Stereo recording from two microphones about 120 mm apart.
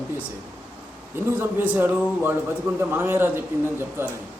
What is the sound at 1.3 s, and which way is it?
Speech, 15° right (ahead or behind).